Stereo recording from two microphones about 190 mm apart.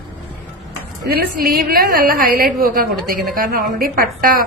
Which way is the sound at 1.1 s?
50° right (ahead or behind).